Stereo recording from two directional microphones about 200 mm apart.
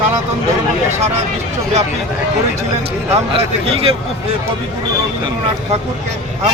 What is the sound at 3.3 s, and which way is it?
Speech, 30° right (ahead or behind).